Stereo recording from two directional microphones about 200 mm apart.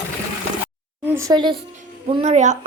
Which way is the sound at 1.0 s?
10° right (ahead or behind).